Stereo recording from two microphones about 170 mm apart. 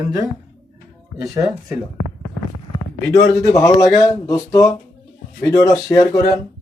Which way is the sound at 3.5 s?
20° left (ahead or behind).